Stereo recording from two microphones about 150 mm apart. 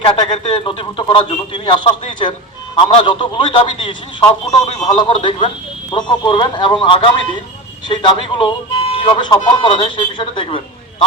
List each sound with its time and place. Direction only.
0.0 s speech: 35° left (ahead or behind)